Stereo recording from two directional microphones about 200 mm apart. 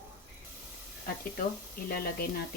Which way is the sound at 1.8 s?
50° left (ahead or behind).